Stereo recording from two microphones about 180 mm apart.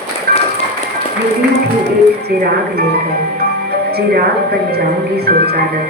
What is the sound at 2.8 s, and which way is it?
Speech, 60° right (ahead or behind).